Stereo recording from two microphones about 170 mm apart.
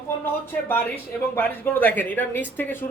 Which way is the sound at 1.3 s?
10° left (ahead or behind).